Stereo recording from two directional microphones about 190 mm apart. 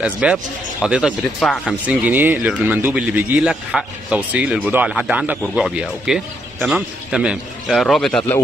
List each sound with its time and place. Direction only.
0.0 s a man's voice: 5° right (ahead or behind)